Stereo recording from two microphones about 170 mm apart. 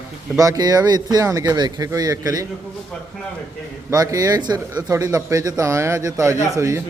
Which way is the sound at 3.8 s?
20° right (ahead or behind).